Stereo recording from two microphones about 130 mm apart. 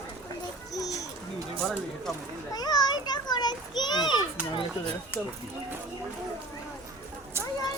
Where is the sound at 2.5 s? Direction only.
30° left (ahead or behind).